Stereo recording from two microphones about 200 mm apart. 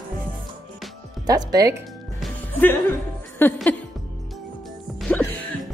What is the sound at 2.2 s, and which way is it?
Music, 10° left (ahead or behind).